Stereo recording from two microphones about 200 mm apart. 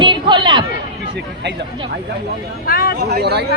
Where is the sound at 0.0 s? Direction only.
20° right (ahead or behind).